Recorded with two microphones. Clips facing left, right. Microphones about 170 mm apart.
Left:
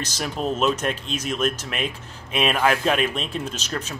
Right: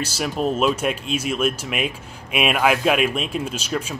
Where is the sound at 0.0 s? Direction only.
5° right (ahead or behind).